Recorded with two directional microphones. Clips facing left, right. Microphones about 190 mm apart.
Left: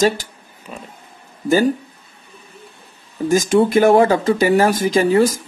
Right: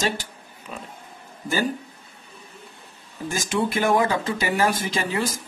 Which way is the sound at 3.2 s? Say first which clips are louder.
Left 10 dB; 40° left (ahead or behind).